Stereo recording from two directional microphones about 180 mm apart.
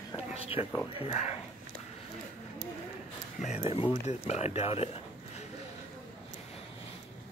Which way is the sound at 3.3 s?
40° left (ahead or behind).